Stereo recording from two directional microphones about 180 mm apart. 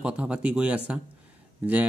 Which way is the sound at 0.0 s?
5° right (ahead or behind).